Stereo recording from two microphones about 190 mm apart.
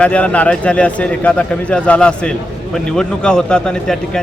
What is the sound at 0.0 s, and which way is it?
A man's voice, 5° left (ahead or behind).